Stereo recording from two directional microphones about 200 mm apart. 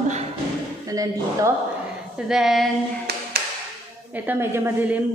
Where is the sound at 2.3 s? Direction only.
Centre (ahead or behind).